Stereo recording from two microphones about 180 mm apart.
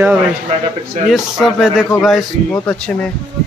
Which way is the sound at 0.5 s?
40° right (ahead or behind).